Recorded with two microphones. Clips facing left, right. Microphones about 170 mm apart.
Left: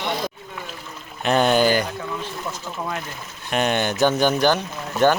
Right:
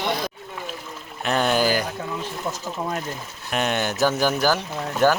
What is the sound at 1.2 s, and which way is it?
Speech, centre (ahead or behind).